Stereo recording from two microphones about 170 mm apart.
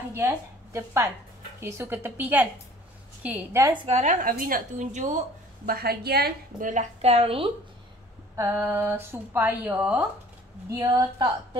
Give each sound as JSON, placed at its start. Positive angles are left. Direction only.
{"t": 0.1, "sound": "a woman's voice", "side_deg": -15}
{"t": 3.8, "sound": "a woman's voice", "side_deg": -45}
{"t": 5.7, "sound": "a woman's voice", "side_deg": -65}
{"t": 6.7, "sound": "a woman's voice", "side_deg": -40}
{"t": 8.4, "sound": "a woman's voice", "side_deg": -15}